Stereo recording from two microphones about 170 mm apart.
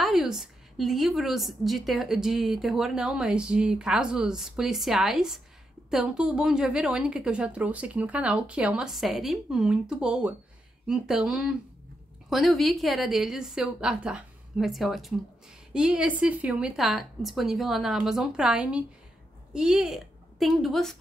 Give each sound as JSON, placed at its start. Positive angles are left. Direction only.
{"t": 0.0, "sound": "a woman's voice", "side_deg": 0}